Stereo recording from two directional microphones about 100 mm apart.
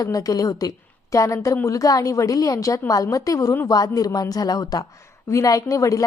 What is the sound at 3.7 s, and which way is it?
Speech, 40° left (ahead or behind).